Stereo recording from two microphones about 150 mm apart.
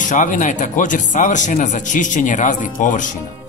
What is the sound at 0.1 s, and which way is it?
Speech, 60° left (ahead or behind).